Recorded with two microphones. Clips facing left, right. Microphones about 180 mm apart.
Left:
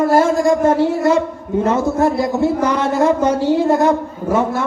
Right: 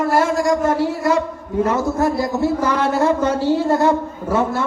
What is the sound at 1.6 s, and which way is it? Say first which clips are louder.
A man's voice: left 4 dB; 20° left (ahead or behind).